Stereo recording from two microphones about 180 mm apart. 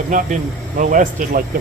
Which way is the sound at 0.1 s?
50° right (ahead or behind).